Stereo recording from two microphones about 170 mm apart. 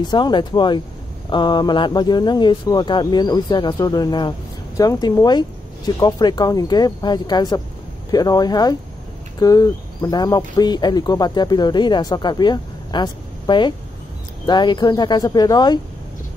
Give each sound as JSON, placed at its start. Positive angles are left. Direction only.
{"t": 0.0, "sound": "speech", "side_deg": 25}